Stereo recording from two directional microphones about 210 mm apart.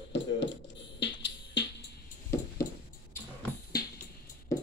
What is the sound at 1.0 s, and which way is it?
Music, 55° left (ahead or behind).